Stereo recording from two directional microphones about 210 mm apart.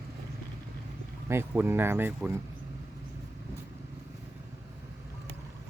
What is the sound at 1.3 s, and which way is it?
Speech, 10° right (ahead or behind).